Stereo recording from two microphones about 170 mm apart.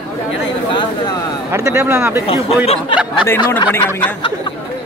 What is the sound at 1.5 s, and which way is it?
Speech, 15° right (ahead or behind).